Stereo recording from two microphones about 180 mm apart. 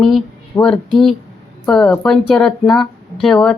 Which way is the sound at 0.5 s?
15° left (ahead or behind).